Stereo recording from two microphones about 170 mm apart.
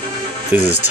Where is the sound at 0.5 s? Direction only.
10° right (ahead or behind).